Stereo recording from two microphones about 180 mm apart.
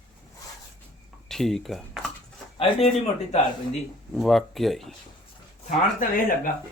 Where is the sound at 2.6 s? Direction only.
30° left (ahead or behind).